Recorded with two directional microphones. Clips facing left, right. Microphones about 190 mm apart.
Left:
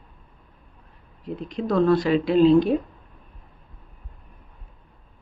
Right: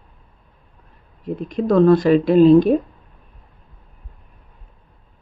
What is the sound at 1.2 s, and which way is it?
Speech, 45° right (ahead or behind).